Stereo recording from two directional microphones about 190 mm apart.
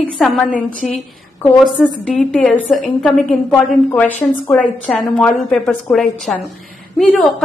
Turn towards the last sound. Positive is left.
turn(degrees=0)  # may be behind; listen again after turning